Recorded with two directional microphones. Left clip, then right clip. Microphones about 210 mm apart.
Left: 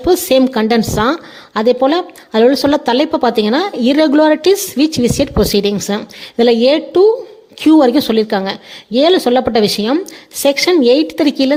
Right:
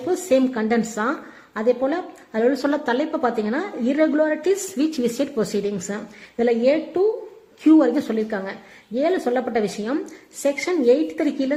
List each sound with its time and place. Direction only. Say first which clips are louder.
0.0 s a woman's voice: left 8 dB; 40° left (ahead or behind)